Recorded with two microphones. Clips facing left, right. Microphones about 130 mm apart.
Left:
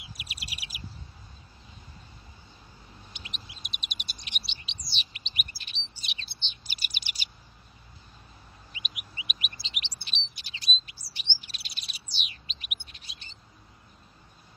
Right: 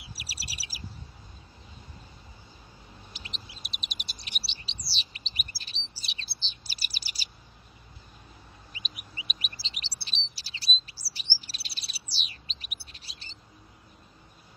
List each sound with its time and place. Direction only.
0.2 s bird: 35° right (ahead or behind)
3.1 s chirp: 35° right (ahead or behind)
4.8 s bird: 35° right (ahead or behind)
5.9 s chirp: 35° right (ahead or behind)
8.7 s bird: 35° right (ahead or behind)
9.2 s chirp: 35° right (ahead or behind)